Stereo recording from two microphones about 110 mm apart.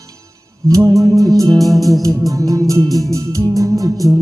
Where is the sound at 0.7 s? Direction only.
30° right (ahead or behind).